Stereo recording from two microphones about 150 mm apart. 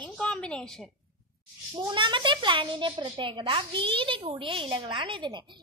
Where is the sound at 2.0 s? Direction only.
35° right (ahead or behind).